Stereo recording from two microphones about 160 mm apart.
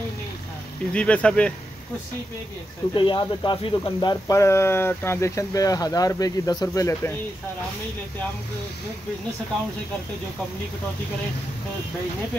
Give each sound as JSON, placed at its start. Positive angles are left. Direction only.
{"t": 0.9, "sound": "speech", "side_deg": 5}
{"t": 2.9, "sound": "speech", "side_deg": 30}